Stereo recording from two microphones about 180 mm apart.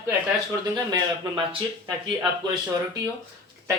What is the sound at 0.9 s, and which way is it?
Speech, 25° right (ahead or behind).